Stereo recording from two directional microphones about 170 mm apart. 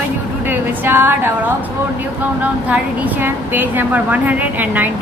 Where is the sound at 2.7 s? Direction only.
10° right (ahead or behind).